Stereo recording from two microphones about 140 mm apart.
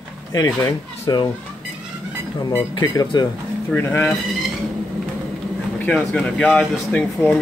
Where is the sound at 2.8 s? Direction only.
30° left (ahead or behind).